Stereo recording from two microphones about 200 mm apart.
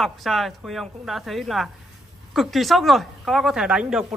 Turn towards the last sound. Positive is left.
turn(degrees=-5)  # may be behind; listen again after turning